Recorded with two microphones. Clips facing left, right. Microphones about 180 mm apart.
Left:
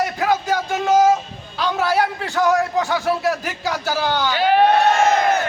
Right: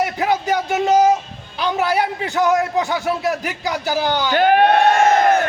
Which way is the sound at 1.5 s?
15° right (ahead or behind).